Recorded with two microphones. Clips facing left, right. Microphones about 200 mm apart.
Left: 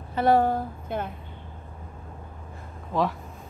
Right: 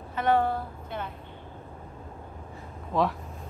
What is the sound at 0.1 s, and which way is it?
A woman's voice, 35° left (ahead or behind).